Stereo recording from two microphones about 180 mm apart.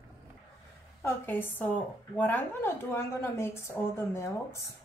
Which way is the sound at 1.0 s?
10° left (ahead or behind).